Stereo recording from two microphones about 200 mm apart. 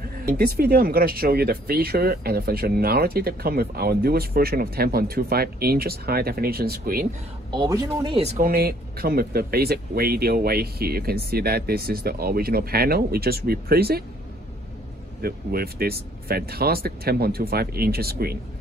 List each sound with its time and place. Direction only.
0.2 s speech: 50° right (ahead or behind)
7.5 s speech: 20° right (ahead or behind)
8.4 s speech: 50° right (ahead or behind)
15.2 s speech: 50° right (ahead or behind)